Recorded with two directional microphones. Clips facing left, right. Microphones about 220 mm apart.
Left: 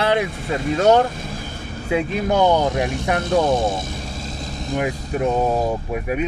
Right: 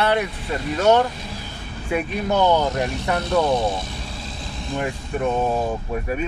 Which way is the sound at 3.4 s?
45° left (ahead or behind).